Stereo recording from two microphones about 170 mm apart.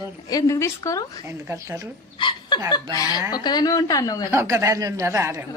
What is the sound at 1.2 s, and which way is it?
Speech, 15° right (ahead or behind).